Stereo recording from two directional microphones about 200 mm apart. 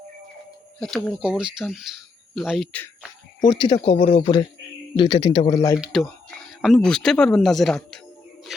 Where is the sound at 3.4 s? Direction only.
25° left (ahead or behind).